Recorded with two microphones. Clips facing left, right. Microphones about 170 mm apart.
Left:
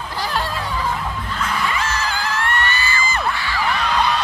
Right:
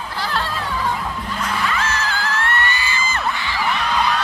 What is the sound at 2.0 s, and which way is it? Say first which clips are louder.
Music: even; 15° left (ahead or behind).